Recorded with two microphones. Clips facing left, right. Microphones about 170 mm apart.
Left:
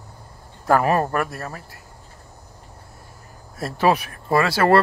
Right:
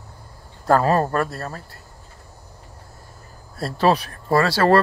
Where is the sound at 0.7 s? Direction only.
15° left (ahead or behind).